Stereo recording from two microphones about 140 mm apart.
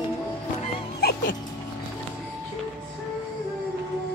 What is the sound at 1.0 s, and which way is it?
Dog, 90° left.